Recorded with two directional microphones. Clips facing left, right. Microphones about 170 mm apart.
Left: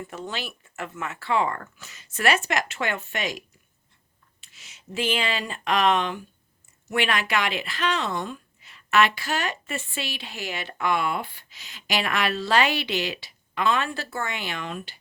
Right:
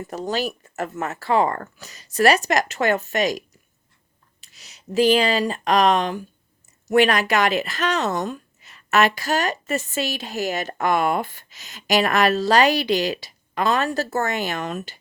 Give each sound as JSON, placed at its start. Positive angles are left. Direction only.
{"t": 0.0, "sound": "speech", "side_deg": -40}